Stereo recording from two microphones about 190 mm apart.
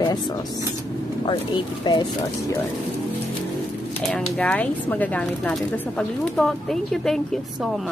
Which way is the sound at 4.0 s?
5° left (ahead or behind).